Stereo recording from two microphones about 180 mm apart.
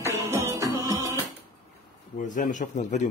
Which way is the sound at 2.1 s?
45° left (ahead or behind).